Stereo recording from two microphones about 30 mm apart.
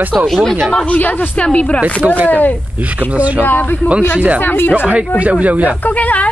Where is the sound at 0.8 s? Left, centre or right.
Left.